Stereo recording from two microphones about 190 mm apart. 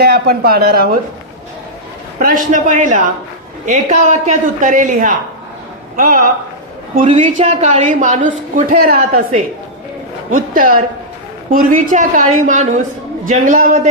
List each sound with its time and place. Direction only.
0.0 s speech: 55° right (ahead or behind)
2.1 s a woman's voice: 45° right (ahead or behind)
7.1 s a woman's voice: 35° right (ahead or behind)